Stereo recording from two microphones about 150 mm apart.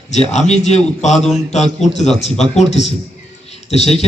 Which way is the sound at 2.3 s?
45° left (ahead or behind).